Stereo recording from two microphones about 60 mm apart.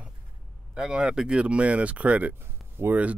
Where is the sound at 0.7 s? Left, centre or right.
Centre.